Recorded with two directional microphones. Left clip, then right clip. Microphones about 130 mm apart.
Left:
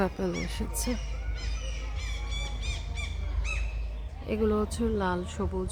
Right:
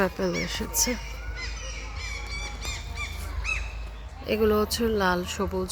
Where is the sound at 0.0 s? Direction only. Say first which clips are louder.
Right 4 dB; centre (ahead or behind).